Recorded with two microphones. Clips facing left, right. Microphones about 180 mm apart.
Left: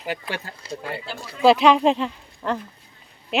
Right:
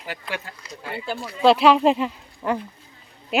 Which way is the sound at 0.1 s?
30° left (ahead or behind).